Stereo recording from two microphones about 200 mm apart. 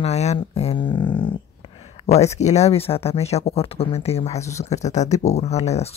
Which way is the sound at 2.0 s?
35° left (ahead or behind).